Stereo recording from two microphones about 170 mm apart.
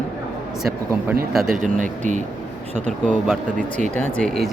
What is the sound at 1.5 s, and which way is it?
Speech, 50° right (ahead or behind).